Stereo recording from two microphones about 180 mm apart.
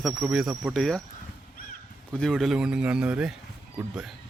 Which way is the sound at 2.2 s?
Centre (ahead or behind).